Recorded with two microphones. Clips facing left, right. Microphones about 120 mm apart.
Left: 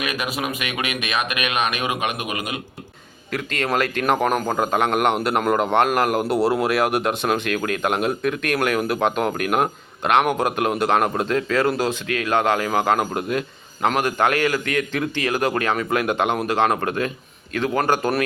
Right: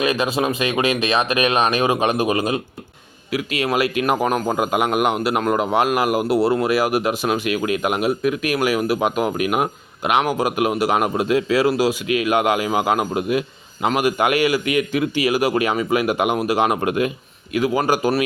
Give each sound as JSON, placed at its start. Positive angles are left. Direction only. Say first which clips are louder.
{"t": 0.0, "sound": "speech", "louder": "right 6 dB", "side_deg": -30}
{"t": 3.3, "sound": "a man's voice", "louder": "right 2 dB", "side_deg": -10}